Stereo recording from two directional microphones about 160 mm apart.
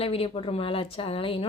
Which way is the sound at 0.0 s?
35° left (ahead or behind).